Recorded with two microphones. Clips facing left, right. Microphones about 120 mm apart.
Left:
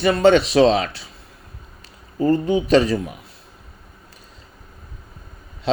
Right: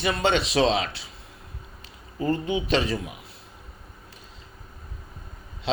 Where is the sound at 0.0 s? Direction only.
45° left (ahead or behind).